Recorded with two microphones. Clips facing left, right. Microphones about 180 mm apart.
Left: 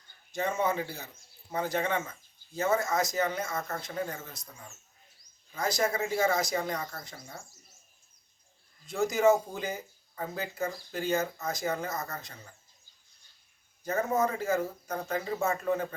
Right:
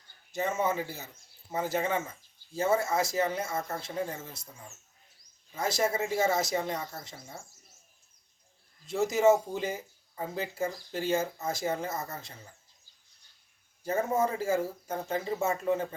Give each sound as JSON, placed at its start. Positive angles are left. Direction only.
{"t": 0.3, "sound": "speech", "side_deg": -5}
{"t": 2.0, "sound": "speech", "side_deg": -30}
{"t": 8.9, "sound": "speech", "side_deg": -25}
{"t": 14.1, "sound": "speech", "side_deg": -30}